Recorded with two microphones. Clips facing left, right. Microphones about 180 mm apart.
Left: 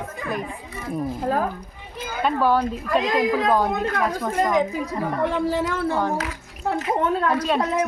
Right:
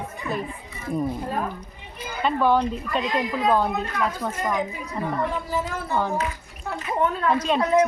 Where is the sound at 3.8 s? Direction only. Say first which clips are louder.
Left 3 dB; 75° left (ahead or behind).